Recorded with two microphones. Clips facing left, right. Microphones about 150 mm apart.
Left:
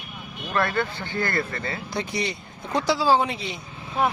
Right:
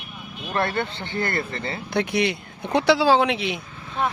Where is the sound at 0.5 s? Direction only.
25° right (ahead or behind).